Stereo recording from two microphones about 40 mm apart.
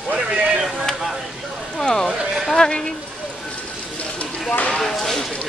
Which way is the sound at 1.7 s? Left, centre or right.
Centre.